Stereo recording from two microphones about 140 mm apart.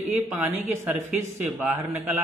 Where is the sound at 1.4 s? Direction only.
15° right (ahead or behind).